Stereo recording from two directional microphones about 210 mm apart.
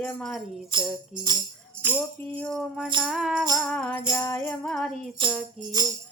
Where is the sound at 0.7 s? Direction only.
20° right (ahead or behind).